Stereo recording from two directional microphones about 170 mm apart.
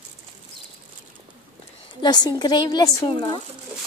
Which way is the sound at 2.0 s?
25° left (ahead or behind).